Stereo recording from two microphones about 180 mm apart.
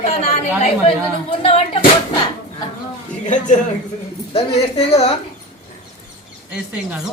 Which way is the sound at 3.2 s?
45° left (ahead or behind).